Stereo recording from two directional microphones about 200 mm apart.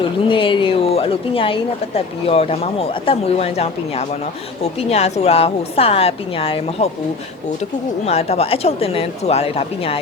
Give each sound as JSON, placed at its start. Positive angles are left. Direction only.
{"t": 0.3, "sound": "speech", "side_deg": 25}
{"t": 8.0, "sound": "speech", "side_deg": 30}